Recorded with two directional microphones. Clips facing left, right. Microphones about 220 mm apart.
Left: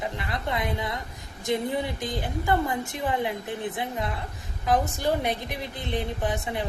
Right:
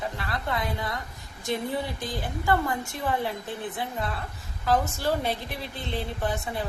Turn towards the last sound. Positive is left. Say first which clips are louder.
# left 1 dB
turn(degrees=20)  # may be behind; listen again after turning